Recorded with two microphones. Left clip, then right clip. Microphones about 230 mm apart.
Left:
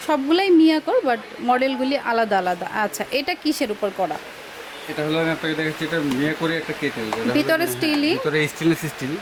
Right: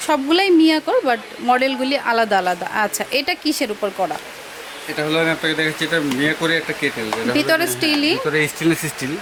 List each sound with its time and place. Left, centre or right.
0.1 s speech: centre
3.8 s speech: centre
4.9 s speech: centre